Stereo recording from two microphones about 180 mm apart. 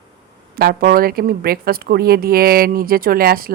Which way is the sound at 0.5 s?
55° right (ahead or behind).